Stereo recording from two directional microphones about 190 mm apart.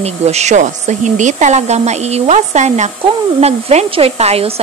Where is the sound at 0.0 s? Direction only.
35° right (ahead or behind).